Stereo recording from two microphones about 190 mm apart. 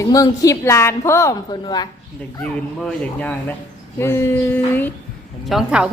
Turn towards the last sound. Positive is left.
turn(degrees=-5)  # may be behind; listen again after turning